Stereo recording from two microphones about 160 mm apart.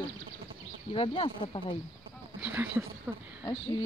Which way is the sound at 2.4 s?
15° right (ahead or behind).